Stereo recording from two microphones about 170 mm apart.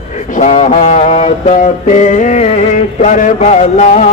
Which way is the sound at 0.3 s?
45° left (ahead or behind).